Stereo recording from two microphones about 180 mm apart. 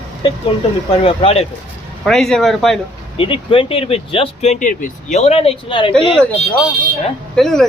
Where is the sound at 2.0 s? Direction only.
Centre (ahead or behind).